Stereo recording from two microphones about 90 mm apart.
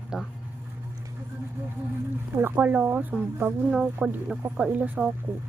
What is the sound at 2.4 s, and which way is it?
Speech, 20° right (ahead or behind).